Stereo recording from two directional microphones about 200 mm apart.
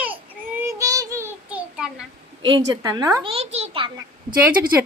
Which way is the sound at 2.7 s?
15° right (ahead or behind).